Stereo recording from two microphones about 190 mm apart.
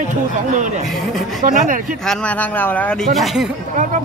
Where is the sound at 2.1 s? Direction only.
5° left (ahead or behind).